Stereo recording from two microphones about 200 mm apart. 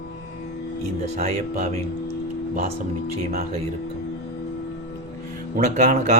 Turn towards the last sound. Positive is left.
turn(degrees=-35)  # may be behind; listen again after turning